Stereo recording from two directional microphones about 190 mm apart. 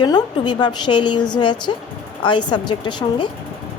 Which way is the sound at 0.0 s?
25° left (ahead or behind).